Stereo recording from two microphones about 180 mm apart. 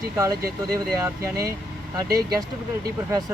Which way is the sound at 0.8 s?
15° right (ahead or behind).